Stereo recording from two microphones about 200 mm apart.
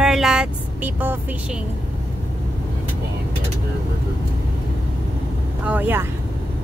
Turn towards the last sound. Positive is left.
turn(degrees=-10)  # may be behind; listen again after turning